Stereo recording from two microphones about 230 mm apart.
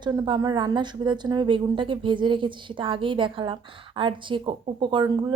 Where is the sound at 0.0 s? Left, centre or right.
Centre.